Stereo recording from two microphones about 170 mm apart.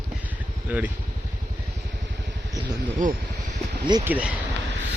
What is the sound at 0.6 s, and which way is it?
Speech, 10° right (ahead or behind).